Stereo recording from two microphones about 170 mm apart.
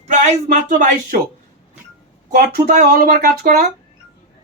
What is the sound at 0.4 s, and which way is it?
Speech, 50° right (ahead or behind).